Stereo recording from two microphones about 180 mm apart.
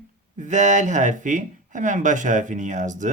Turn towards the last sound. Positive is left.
turn(degrees=-45)  # may be behind; listen again after turning